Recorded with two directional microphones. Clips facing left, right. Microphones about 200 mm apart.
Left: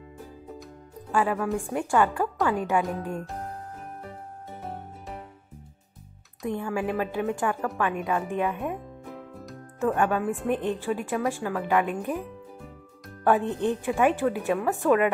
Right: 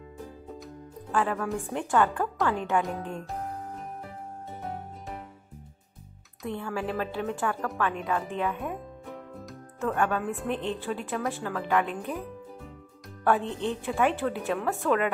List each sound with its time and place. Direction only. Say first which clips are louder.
1.1 s a woman's voice: left 3 dB; 10° left (ahead or behind)
6.4 s a woman's voice: left 4 dB; 15° left (ahead or behind)
9.8 s a woman's voice: left 3 dB; 15° left (ahead or behind)
13.4 s a woman's voice: left 4 dB; 50° left (ahead or behind)
13.7 s a woman's voice: left 3 dB; 15° left (ahead or behind)